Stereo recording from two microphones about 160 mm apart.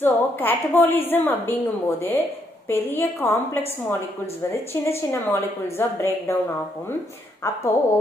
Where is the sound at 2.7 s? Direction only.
15° left (ahead or behind).